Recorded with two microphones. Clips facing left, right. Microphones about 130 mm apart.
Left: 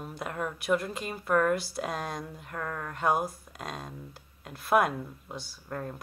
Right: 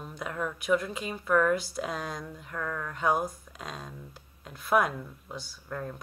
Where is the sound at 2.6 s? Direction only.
15° left (ahead or behind).